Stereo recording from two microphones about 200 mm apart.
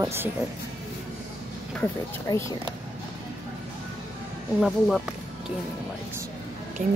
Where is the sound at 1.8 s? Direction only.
15° left (ahead or behind).